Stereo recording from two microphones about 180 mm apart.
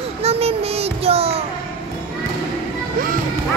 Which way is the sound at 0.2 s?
35° right (ahead or behind).